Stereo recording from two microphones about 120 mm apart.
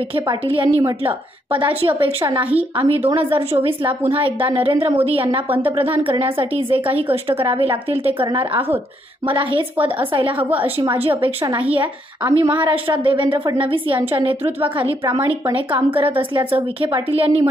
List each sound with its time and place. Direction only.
0.1 s a woman's voice: 45° right (ahead or behind)
3.3 s speech: 20° right (ahead or behind)
4.5 s a woman's voice: 45° right (ahead or behind)
5.5 s a woman's voice: 15° right (ahead or behind)
6.0 s a woman's voice: 45° right (ahead or behind)
6.9 s a woman's voice: 15° right (ahead or behind)
7.2 s a woman's voice: 45° right (ahead or behind)
8.6 s speech: 20° right (ahead or behind)
9.3 s a woman's voice: 45° right (ahead or behind)
12.2 s a woman's voice: 15° right (ahead or behind)
12.7 s a woman's voice: 45° right (ahead or behind)